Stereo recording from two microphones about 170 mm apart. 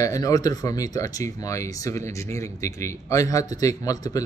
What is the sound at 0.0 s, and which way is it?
Speech, 20° left (ahead or behind).